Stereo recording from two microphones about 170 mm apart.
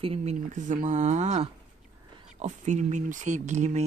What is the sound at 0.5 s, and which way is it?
Speech, 45° right (ahead or behind).